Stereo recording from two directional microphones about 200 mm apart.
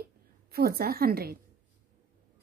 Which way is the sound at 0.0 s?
50° right (ahead or behind).